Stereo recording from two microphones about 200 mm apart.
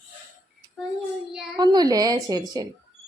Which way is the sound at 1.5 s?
20° right (ahead or behind).